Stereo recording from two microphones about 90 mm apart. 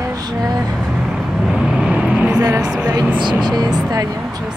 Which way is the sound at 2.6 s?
10° right (ahead or behind).